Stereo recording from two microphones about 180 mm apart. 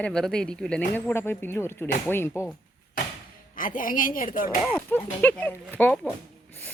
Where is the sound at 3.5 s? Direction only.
50° left (ahead or behind).